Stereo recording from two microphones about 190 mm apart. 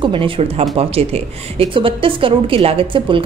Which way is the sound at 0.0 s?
25° right (ahead or behind).